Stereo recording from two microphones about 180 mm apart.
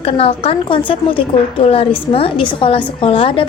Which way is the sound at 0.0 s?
30° left (ahead or behind).